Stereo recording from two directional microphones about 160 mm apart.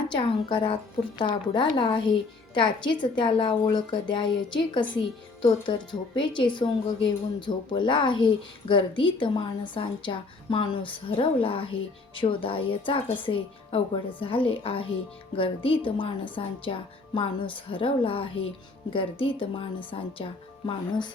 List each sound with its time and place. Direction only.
0.1 s a woman's voice: 30° left (ahead or behind)